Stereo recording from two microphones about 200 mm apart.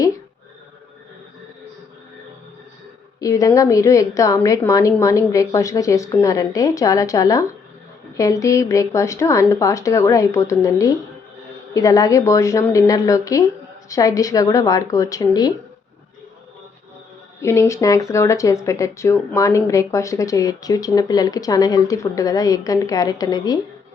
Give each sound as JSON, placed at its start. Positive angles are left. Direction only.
{"t": 3.2, "sound": "speech", "side_deg": 15}
{"t": 17.4, "sound": "speech", "side_deg": 15}